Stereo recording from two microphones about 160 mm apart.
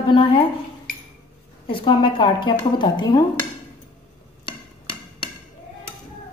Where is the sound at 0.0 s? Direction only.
30° left (ahead or behind).